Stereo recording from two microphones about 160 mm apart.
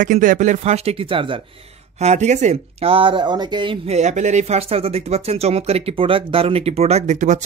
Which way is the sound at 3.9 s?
45° right (ahead or behind).